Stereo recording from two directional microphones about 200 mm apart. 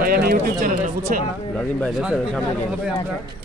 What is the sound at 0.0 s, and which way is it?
Speech, 50° right (ahead or behind).